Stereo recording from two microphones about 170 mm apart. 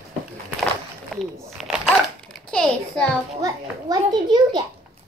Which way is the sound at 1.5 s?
5° right (ahead or behind).